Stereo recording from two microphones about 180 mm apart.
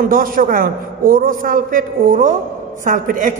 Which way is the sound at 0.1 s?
50° right (ahead or behind).